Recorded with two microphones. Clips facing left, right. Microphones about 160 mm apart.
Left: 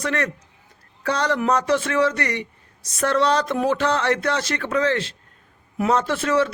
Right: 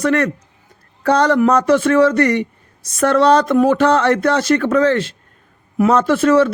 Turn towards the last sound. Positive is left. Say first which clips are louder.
# right 8 dB
turn(degrees=-50)  # may be behind; listen again after turning